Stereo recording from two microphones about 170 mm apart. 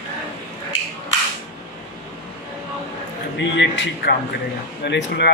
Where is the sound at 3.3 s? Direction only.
90° left.